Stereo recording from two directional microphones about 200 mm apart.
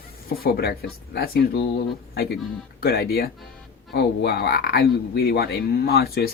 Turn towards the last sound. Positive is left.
turn(degrees=50)  # may be behind; listen again after turning